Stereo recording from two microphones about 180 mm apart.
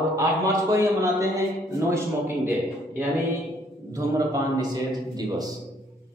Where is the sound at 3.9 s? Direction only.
20° right (ahead or behind).